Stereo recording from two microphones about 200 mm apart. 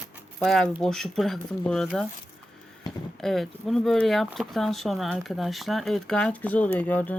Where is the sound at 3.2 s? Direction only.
Centre (ahead or behind).